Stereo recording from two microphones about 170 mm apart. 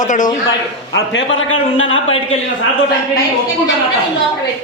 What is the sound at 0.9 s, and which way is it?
Speech, 90° left.